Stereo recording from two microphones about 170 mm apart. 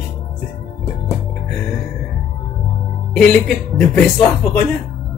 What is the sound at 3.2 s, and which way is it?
Speech, 5° left (ahead or behind).